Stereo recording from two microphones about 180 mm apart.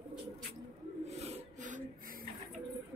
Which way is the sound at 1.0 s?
35° right (ahead or behind).